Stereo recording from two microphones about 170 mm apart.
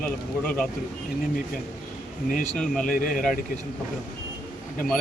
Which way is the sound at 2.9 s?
55° left (ahead or behind).